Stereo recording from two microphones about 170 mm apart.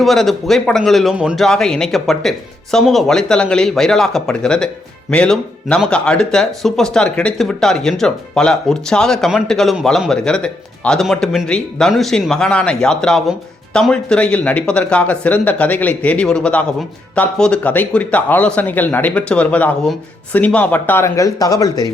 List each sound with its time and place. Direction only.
0.0 s speech: centre (ahead or behind); by 21.8 s 20° left (ahead or behind)